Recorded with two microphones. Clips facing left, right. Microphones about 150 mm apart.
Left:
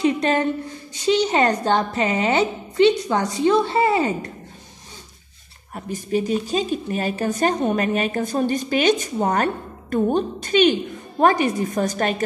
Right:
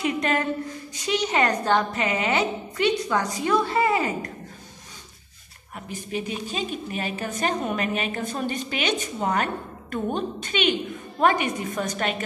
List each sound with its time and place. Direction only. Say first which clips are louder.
0.0 s a woman's voice: left 5 dB; 30° left (ahead or behind)
5.9 s speech: left 8 dB; 40° left (ahead or behind)